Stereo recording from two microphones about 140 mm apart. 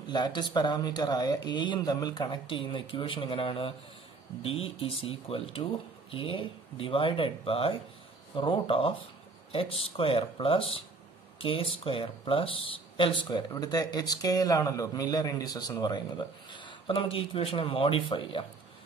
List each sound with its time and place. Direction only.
0.1 s speech: 30° left (ahead or behind)